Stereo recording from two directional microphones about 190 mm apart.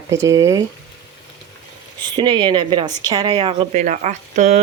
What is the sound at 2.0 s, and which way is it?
Speech, 25° right (ahead or behind).